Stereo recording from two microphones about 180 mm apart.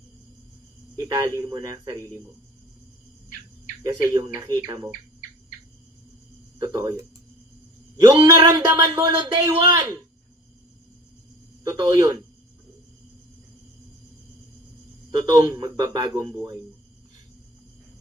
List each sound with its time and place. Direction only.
0.9 s speech: 20° right (ahead or behind)
4.1 s speech: 20° right (ahead or behind)
6.6 s speech: 20° right (ahead or behind)
11.6 s speech: 20° right (ahead or behind)
15.3 s speech: 20° right (ahead or behind)